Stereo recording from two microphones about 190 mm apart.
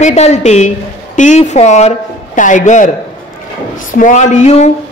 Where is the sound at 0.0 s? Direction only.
35° left (ahead or behind).